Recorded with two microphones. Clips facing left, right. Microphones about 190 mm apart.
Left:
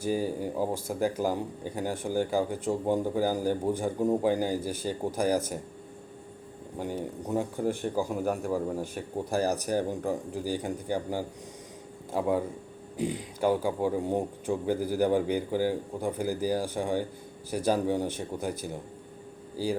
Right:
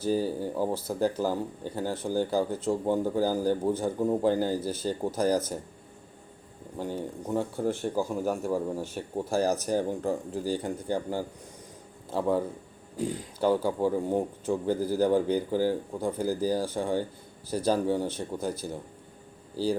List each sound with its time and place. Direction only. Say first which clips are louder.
0.0 s speech: right 1 dB; 15° left (ahead or behind)
6.7 s speech: even; 15° left (ahead or behind)
13.0 s speech: even; 15° left (ahead or behind)